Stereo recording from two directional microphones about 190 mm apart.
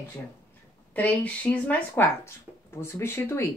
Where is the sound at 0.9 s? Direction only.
10° left (ahead or behind).